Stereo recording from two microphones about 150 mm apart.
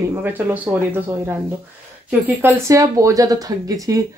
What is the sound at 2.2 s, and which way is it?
Speech, 15° right (ahead or behind).